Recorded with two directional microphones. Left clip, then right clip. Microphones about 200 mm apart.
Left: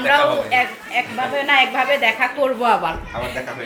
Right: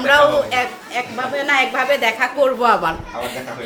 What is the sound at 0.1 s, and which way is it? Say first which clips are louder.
A woman's voice: right 3 dB; 10° right (ahead or behind).